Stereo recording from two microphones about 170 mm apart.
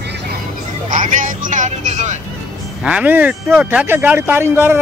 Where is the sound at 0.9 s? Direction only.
50° right (ahead or behind).